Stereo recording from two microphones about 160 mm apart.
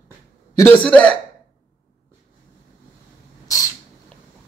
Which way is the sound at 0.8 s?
5° left (ahead or behind).